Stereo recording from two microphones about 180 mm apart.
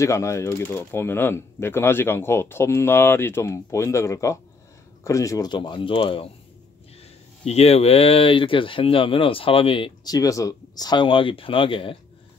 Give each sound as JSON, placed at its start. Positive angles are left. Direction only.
{"t": 0.0, "sound": "speech", "side_deg": 15}
{"t": 7.4, "sound": "speech", "side_deg": 35}